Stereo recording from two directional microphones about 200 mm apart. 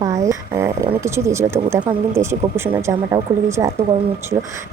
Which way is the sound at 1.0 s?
15° right (ahead or behind).